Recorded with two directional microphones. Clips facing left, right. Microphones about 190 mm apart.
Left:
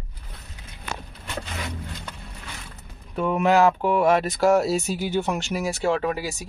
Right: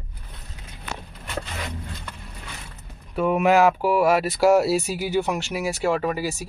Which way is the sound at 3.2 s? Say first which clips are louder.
Right 1 dB; 10° right (ahead or behind).